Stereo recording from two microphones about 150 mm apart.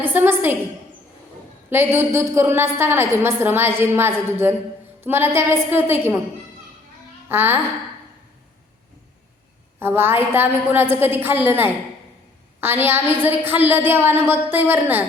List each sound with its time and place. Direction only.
0.0 s a woman's voice: 15° right (ahead or behind)
1.7 s a woman's voice: 15° right (ahead or behind)
7.3 s a woman's voice: 15° right (ahead or behind)
9.8 s a woman's voice: 15° right (ahead or behind)
12.5 s a woman's voice: 15° right (ahead or behind)